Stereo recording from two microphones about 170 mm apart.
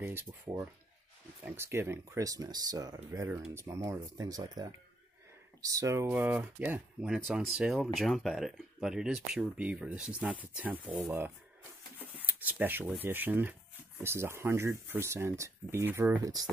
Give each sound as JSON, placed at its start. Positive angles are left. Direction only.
{"t": 0.0, "sound": "speech", "side_deg": -15}
{"t": 12.3, "sound": "speech", "side_deg": -10}